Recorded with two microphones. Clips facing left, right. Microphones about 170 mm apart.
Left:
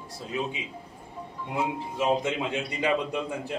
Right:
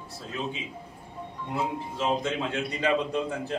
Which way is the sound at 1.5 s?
15° left (ahead or behind).